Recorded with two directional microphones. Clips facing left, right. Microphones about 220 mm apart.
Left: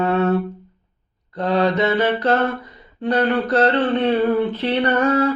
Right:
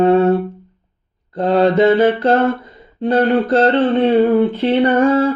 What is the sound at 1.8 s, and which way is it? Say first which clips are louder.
Mantra: right 7 dB; 30° right (ahead or behind).